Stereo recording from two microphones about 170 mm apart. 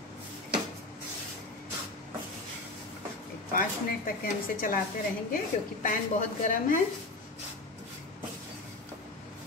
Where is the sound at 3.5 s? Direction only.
55° left (ahead or behind).